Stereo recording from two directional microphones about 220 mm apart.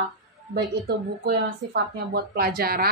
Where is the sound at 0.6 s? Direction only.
45° right (ahead or behind).